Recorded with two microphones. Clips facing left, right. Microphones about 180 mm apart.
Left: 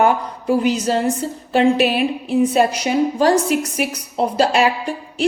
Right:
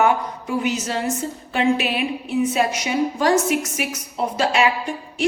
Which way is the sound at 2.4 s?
35° left (ahead or behind).